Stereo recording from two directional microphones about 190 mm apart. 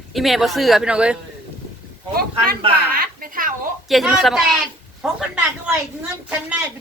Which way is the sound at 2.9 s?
50° right (ahead or behind).